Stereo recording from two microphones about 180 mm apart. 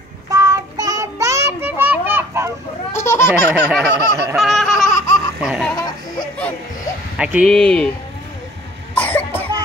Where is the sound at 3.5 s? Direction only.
Centre (ahead or behind).